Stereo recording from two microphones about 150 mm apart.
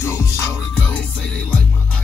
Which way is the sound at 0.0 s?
20° left (ahead or behind).